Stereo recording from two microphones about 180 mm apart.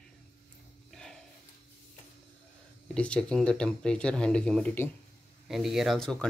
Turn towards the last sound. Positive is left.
turn(degrees=0)  # may be behind; listen again after turning